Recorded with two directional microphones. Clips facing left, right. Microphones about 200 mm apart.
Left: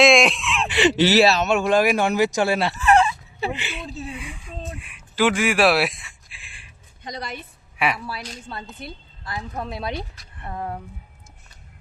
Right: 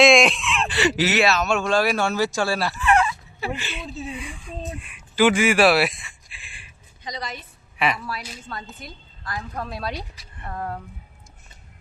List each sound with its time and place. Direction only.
0.0 s fowl: centre (ahead or behind)
0.8 s speech: 25° left (ahead or behind)
1.6 s speech: 15° left (ahead or behind)
2.7 s fowl: 40° left (ahead or behind)
3.0 s wail: 25° left (ahead or behind)
3.7 s speech: centre (ahead or behind)
7.0 s a woman's voice: 55° left (ahead or behind)
7.8 s a woman's voice: 5° left (ahead or behind)
8.9 s speech: 25° left (ahead or behind)
10.2 s speech: centre (ahead or behind)
10.5 s speech: 15° left (ahead or behind)